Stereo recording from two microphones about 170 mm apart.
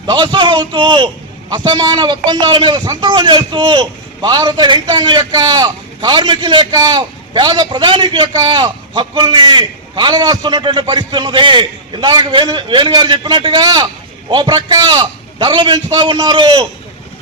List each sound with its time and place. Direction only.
0.0 s a man's voice: 25° right (ahead or behind)